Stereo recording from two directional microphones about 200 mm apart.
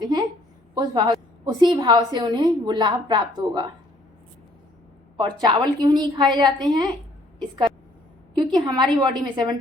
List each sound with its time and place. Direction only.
0.0 s a sound: 20° right (ahead or behind)
0.7 s a woman's voice: 20° right (ahead or behind)
5.1 s a woman's voice: 20° right (ahead or behind)
8.4 s a woman's voice: 20° right (ahead or behind)